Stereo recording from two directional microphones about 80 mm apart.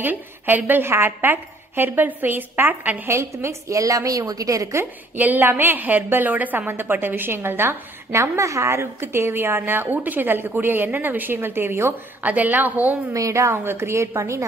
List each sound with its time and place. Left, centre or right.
0.0 s a woman's voice: right
3.1 s a woman's voice: right
5.1 s a woman's voice: right
13.1 s a woman's voice: right